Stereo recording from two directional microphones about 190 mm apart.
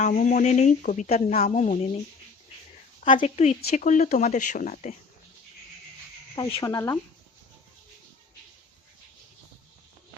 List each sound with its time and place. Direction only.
0.0 s speech: 40° left (ahead or behind)
3.2 s speech: 35° left (ahead or behind)
6.3 s speech: 20° left (ahead or behind)